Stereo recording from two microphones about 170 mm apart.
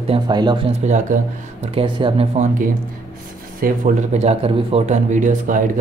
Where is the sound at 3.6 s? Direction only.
45° right (ahead or behind).